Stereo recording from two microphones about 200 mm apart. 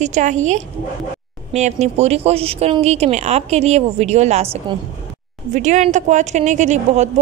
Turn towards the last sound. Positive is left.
turn(degrees=-35)  # may be behind; listen again after turning